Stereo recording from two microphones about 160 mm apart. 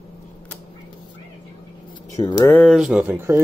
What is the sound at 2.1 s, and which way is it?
Speech, 20° left (ahead or behind).